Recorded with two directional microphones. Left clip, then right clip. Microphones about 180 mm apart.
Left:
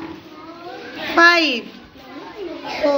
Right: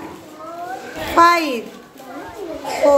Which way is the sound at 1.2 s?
10° right (ahead or behind).